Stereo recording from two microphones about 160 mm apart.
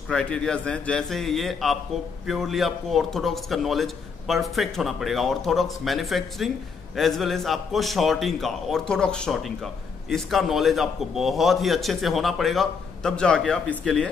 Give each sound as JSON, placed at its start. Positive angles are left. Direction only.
{"t": 0.1, "sound": "a man's voice", "side_deg": 5}